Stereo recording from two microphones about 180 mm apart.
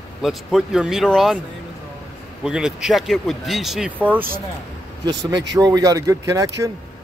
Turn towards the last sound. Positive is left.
turn(degrees=-20)  # may be behind; listen again after turning